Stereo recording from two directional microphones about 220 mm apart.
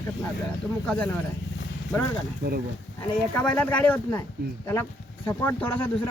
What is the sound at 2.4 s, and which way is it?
Speech, 45° right (ahead or behind).